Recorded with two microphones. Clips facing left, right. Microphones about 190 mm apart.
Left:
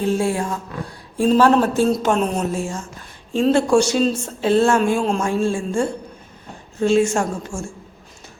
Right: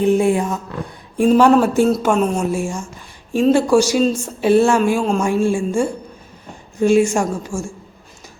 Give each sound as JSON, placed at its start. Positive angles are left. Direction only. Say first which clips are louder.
{"t": 0.0, "sound": "a woman's voice", "louder": "right 5 dB", "side_deg": -20}